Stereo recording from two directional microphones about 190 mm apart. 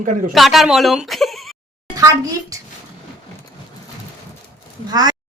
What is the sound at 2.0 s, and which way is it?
Speech, 15° right (ahead or behind).